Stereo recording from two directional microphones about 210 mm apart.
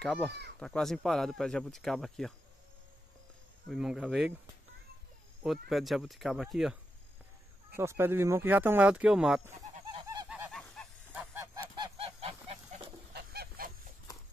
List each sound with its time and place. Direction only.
0.0 s speech: centre (ahead or behind)
3.6 s speech: centre (ahead or behind)
5.4 s speech: centre (ahead or behind)
7.7 s speech: 10° right (ahead or behind)
9.6 s a sound: 20° right (ahead or behind)
10.5 s goose: 5° left (ahead or behind)
11.7 s goose: 25° right (ahead or behind)
13.1 s goose: 50° right (ahead or behind)